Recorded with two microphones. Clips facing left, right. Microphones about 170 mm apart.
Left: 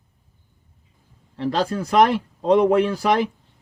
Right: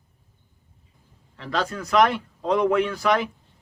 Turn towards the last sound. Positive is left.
turn(degrees=35)  # may be behind; listen again after turning